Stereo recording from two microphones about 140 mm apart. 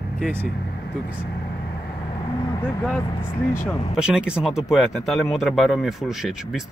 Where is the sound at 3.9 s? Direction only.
5° right (ahead or behind).